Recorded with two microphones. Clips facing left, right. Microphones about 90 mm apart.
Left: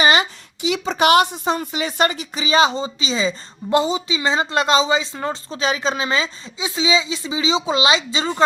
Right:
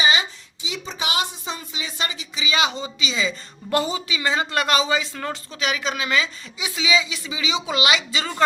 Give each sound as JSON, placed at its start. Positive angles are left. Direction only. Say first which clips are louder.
{"t": 0.0, "sound": "a woman's voice", "louder": "left 5 dB", "side_deg": 60}